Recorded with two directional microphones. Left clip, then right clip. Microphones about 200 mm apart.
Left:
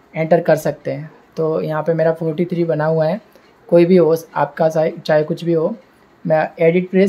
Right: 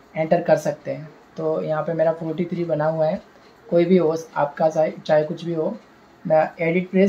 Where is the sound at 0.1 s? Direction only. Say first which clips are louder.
Left 4 dB; 55° left (ahead or behind).